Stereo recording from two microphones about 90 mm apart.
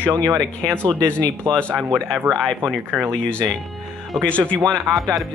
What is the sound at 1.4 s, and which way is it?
Speech, 10° left (ahead or behind).